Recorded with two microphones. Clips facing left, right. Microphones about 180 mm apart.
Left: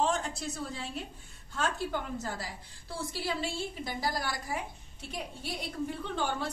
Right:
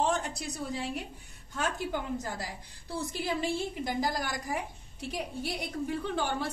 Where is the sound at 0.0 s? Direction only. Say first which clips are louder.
Right 1 dB; 15° right (ahead or behind).